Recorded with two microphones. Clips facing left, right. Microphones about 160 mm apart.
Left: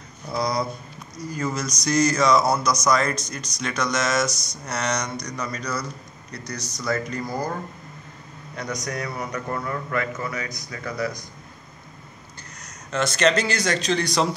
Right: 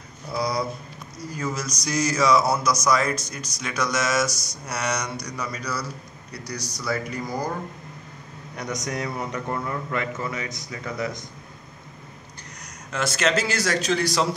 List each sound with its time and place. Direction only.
0.3 s speech: 5° right (ahead or behind)
8.8 s a man's voice: 20° right (ahead or behind)
12.9 s a man's voice: 5° right (ahead or behind)